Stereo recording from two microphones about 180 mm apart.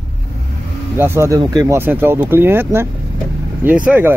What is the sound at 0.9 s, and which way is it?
Speech, 10° right (ahead or behind).